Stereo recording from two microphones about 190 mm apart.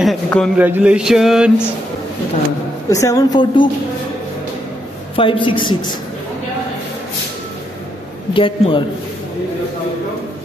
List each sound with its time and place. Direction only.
0.0 s a man's voice: centre (ahead or behind)
0.6 s mantra: 10° right (ahead or behind)
2.9 s a woman's voice: 15° left (ahead or behind)
5.1 s a woman's voice: 25° left (ahead or behind)
8.3 s a woman's voice: 25° left (ahead or behind)